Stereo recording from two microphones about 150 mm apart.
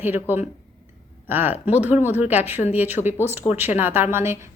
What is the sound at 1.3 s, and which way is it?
Speech, 15° right (ahead or behind).